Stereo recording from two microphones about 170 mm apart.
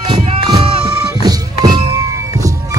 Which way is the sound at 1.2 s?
25° right (ahead or behind).